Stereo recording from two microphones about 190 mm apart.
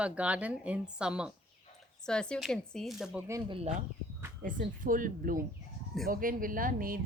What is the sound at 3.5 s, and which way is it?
Speech, 30° right (ahead or behind).